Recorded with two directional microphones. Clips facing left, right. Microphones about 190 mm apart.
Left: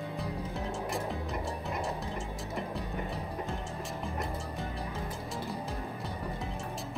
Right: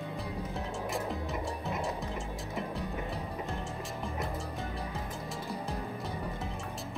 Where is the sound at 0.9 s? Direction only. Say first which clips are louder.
Right 2 dB; centre (ahead or behind).